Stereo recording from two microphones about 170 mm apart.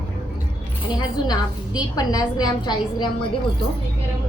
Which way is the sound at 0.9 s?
20° left (ahead or behind).